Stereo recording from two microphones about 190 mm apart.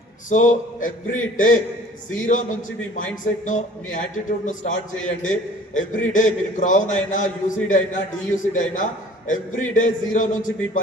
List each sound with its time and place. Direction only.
0.3 s a man's voice: 40° left (ahead or behind)